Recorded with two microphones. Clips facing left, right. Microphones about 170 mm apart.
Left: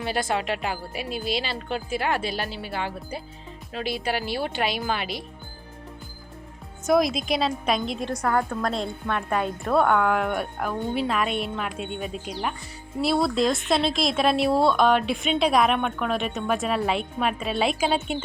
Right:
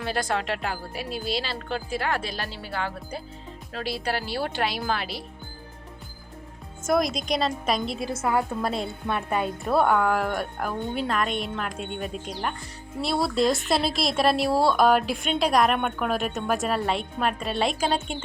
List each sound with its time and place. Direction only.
0.3 s speech: 5° left (ahead or behind)
2.2 s speech: 5° left (ahead or behind)
3.7 s speech: 5° left (ahead or behind)
6.8 s speech: centre (ahead or behind)